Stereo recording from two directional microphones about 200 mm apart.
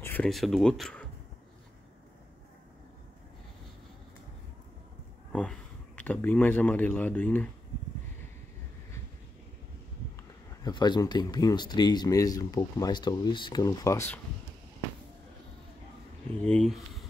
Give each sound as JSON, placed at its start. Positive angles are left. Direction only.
{"t": 0.0, "sound": "speech", "side_deg": 5}
{"t": 5.3, "sound": "speech", "side_deg": 5}
{"t": 10.6, "sound": "speech", "side_deg": 20}
{"t": 16.3, "sound": "speech", "side_deg": 5}